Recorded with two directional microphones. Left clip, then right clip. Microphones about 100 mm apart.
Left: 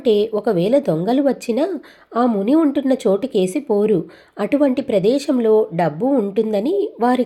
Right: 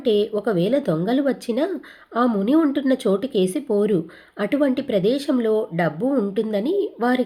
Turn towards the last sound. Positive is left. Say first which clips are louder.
# left 4 dB
turn(degrees=20)  # may be behind; listen again after turning